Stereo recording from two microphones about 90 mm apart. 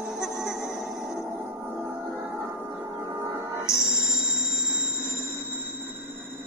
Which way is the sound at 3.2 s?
50° right (ahead or behind).